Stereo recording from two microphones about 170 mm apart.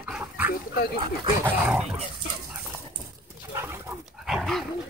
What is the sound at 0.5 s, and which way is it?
Dog, 65° left (ahead or behind).